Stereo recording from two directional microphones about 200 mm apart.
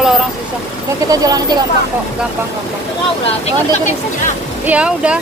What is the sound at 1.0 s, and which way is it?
Speech, 20° right (ahead or behind).